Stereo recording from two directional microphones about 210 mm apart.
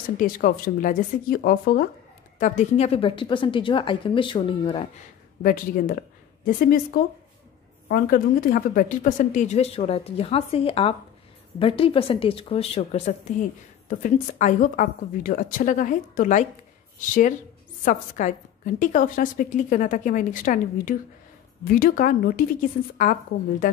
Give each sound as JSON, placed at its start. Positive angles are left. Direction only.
{"t": 0.2, "sound": "a woman's voice", "side_deg": 40}
{"t": 5.4, "sound": "a woman's voice", "side_deg": 40}